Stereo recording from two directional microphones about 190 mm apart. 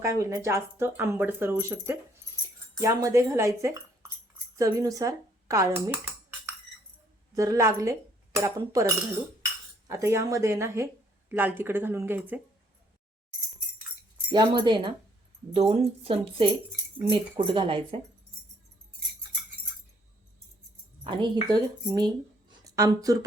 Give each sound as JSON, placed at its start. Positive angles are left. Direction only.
{"t": 0.0, "sound": "speech", "side_deg": -15}
{"t": 7.3, "sound": "speech", "side_deg": -15}
{"t": 14.3, "sound": "speech", "side_deg": -25}
{"t": 21.0, "sound": "speech", "side_deg": -25}